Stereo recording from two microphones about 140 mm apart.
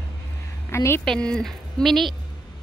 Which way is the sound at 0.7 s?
20° left (ahead or behind).